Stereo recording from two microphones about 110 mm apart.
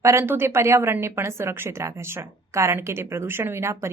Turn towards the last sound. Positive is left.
turn(degrees=-25)  # may be behind; listen again after turning